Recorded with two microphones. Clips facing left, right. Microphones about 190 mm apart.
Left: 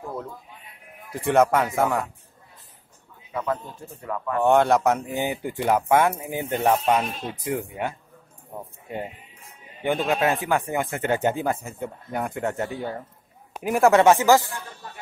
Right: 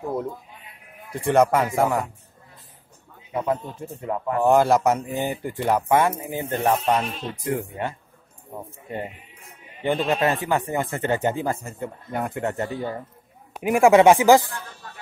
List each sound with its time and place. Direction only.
1.1 s speech: centre (ahead or behind)
3.3 s a man's voice: 20° right (ahead or behind)
4.4 s speech: centre (ahead or behind)
9.8 s speech: 5° left (ahead or behind); by 14.4 s 15° right (ahead or behind)